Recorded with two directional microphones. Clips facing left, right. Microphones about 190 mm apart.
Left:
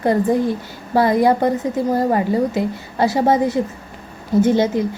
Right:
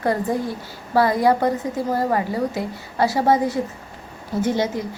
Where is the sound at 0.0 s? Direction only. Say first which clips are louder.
Left 5 dB; 20° left (ahead or behind).